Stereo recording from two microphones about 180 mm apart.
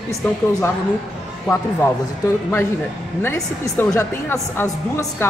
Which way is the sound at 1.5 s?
10° left (ahead or behind).